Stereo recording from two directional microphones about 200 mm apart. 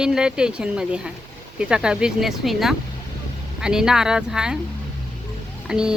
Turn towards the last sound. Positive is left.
turn(degrees=-5)  # may be behind; listen again after turning